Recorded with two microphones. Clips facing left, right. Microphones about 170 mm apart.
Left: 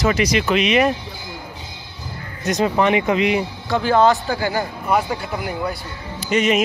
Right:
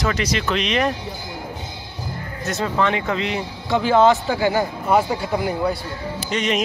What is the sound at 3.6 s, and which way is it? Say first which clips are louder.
Speech: right 1 dB; 20° right (ahead or behind).